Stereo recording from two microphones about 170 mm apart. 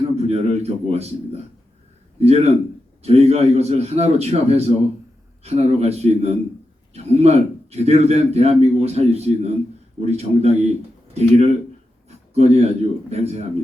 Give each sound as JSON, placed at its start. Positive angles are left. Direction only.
{"t": 0.2, "sound": "a man's voice", "side_deg": -40}